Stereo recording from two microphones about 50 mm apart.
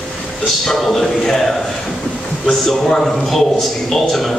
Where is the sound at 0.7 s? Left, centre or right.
Centre.